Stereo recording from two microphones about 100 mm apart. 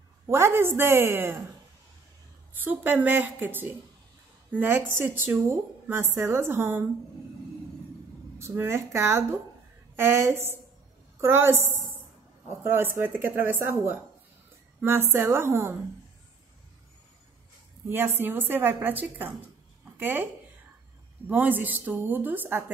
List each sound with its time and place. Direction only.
0.3 s a woman's voice: 25° right (ahead or behind)
2.5 s a woman's voice: 20° right (ahead or behind)
8.4 s a woman's voice: 25° right (ahead or behind)
17.8 s a woman's voice: 20° right (ahead or behind)
19.8 s a sound: 20° right (ahead or behind)
21.3 s a woman's voice: 20° right (ahead or behind)